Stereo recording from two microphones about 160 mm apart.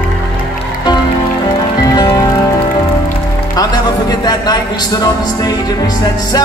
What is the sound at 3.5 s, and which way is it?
Music, 25° left (ahead or behind).